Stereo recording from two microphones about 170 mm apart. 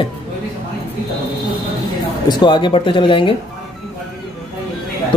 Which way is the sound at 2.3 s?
25° left (ahead or behind).